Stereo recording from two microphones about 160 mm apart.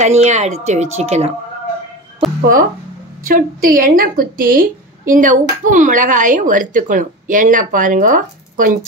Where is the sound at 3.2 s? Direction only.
60° right (ahead or behind).